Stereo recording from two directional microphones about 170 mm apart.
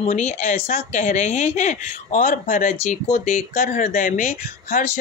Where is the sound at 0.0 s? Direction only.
40° left (ahead or behind).